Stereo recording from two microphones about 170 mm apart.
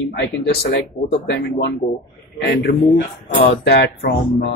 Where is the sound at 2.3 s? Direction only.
85° left.